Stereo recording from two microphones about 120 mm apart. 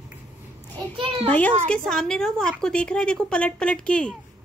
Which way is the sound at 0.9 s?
45° right (ahead or behind).